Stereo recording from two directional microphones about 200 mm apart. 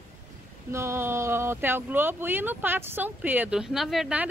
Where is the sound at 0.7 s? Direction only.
10° right (ahead or behind).